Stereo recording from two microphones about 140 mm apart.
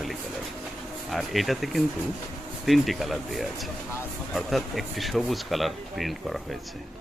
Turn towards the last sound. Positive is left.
turn(degrees=0)  # may be behind; listen again after turning